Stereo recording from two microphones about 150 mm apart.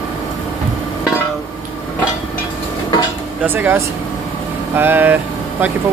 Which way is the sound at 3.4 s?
10° right (ahead or behind).